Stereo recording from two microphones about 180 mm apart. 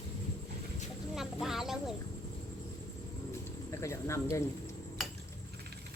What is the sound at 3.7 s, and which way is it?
Speech, 15° left (ahead or behind).